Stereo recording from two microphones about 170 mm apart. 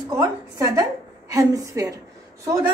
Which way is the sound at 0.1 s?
20° right (ahead or behind).